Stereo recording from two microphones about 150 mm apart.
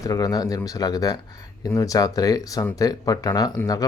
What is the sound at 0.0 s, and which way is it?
Speech, 25° left (ahead or behind).